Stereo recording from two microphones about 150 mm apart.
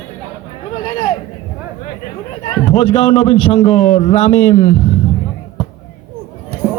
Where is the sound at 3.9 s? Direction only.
45° left (ahead or behind).